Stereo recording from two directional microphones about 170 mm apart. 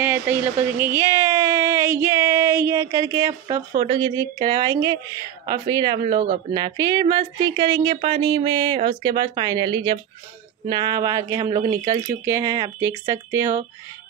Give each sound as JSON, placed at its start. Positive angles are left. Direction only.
{"t": 0.0, "sound": "speech", "side_deg": -10}